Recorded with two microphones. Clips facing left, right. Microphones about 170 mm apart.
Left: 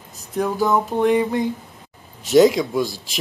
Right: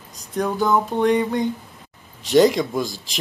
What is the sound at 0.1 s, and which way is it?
Speech, 5° left (ahead or behind).